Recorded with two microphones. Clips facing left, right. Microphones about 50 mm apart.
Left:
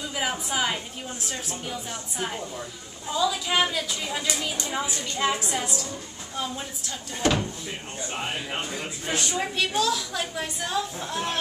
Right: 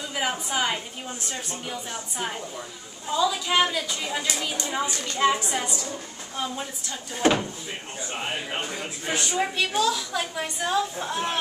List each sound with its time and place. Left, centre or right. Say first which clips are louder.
0.1 s a sound: right 2 dB; centre
1.3 s a woman's voice: left 1 dB; centre
7.2 s a woman's voice: right 3 dB; centre
8.1 s a woman's voice: right 1 dB; centre